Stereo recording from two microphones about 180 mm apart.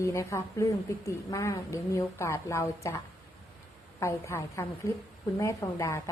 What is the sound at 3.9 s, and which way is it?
A woman's voice, 15° left (ahead or behind).